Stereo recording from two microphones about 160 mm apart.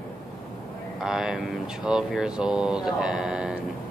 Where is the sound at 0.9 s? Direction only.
5° right (ahead or behind).